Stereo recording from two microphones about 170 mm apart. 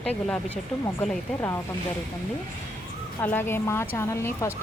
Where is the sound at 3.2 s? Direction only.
15° left (ahead or behind).